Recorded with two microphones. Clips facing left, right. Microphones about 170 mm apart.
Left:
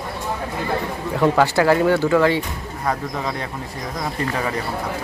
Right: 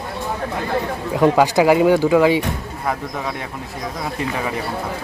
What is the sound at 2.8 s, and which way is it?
Speech, 5° right (ahead or behind).